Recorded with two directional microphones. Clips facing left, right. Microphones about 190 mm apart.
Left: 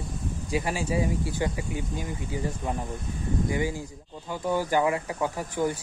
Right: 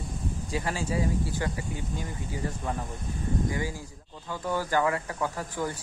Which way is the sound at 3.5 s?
20° left (ahead or behind).